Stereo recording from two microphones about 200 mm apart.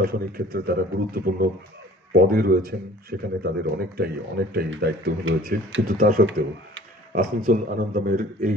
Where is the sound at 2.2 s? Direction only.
50° right (ahead or behind).